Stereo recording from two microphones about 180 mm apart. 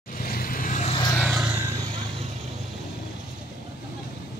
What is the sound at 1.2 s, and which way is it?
Vehicle, 5° right (ahead or behind).